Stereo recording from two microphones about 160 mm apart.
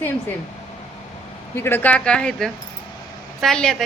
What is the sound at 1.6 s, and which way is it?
A woman's voice, 15° left (ahead or behind).